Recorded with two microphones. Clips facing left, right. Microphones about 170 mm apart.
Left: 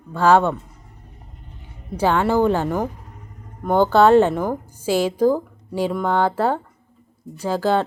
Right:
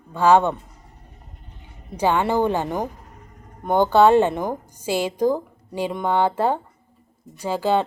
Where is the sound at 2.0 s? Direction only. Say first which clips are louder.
Left 2 dB; 15° right (ahead or behind).